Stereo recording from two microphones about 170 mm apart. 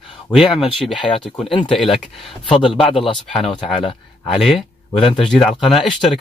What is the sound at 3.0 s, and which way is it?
Speech, centre (ahead or behind).